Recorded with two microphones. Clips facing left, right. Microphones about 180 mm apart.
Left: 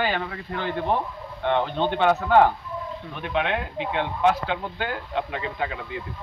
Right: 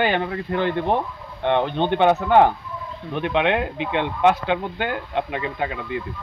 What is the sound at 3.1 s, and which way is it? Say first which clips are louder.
Speech: right 6 dB; 70° right (ahead or behind).